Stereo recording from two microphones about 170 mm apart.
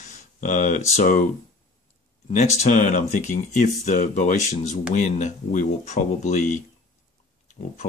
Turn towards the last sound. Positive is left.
turn(degrees=45)  # may be behind; listen again after turning